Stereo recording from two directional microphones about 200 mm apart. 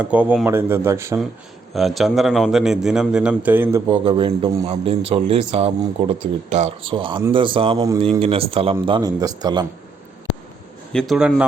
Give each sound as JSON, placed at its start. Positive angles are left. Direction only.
{"t": 0.0, "sound": "speech", "side_deg": -5}
{"t": 1.7, "sound": "a man's voice", "side_deg": 0}
{"t": 4.0, "sound": "a man's voice", "side_deg": -25}
{"t": 10.9, "sound": "a man's voice", "side_deg": 0}